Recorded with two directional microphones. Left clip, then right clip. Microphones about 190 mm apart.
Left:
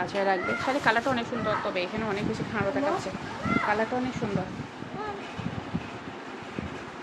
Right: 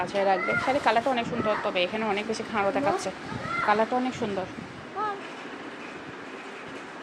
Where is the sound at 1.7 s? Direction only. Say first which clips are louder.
Right 3 dB; 20° right (ahead or behind).